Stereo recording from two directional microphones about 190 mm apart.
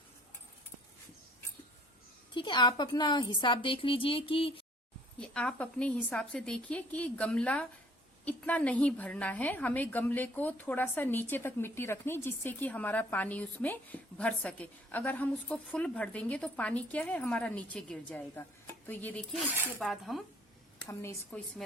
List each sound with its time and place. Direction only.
2.3 s a woman's voice: 25° left (ahead or behind)
5.2 s a woman's voice: 5° left (ahead or behind)
20.8 s a woman's voice: 15° left (ahead or behind)